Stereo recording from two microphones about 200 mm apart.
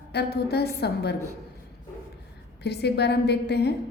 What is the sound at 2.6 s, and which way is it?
A woman's voice, 55° left (ahead or behind).